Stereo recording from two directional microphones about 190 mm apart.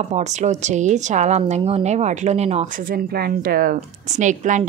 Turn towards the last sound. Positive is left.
turn(degrees=-40)  # may be behind; listen again after turning